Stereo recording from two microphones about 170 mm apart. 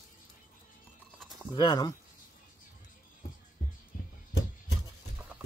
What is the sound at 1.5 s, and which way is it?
Speech, 25° left (ahead or behind).